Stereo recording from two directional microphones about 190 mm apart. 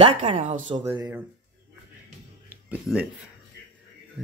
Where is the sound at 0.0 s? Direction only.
30° right (ahead or behind).